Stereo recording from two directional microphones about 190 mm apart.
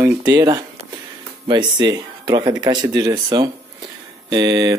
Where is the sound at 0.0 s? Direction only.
15° right (ahead or behind).